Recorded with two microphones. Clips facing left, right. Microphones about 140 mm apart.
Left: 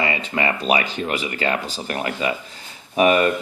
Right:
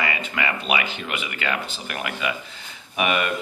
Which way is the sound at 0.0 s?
30° left (ahead or behind).